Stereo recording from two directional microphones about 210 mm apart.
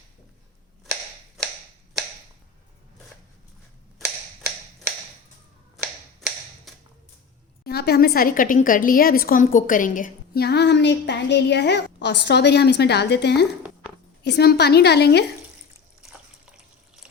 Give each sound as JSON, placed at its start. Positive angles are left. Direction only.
{"t": 6.7, "sound": "a sound", "side_deg": 0}
{"t": 7.6, "sound": "a woman's voice", "side_deg": 50}
{"t": 16.0, "sound": "water", "side_deg": -5}